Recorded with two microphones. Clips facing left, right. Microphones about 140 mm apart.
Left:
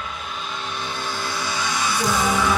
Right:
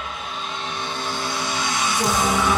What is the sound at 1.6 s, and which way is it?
Music, 20° right (ahead or behind).